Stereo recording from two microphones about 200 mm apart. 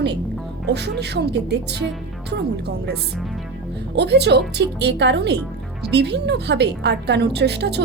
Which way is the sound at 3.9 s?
60° right (ahead or behind).